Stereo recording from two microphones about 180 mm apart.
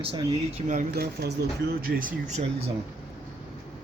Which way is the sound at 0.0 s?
30° right (ahead or behind).